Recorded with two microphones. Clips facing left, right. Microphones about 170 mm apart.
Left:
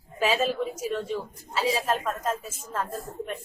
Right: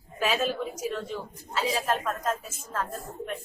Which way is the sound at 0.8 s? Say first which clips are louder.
Left 3 dB; 30° left (ahead or behind).